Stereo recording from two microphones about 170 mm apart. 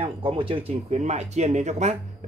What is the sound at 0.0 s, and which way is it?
Speech, 30° right (ahead or behind).